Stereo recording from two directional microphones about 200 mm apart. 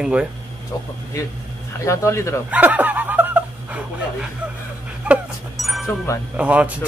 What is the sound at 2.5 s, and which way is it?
Snicker, 10° right (ahead or behind).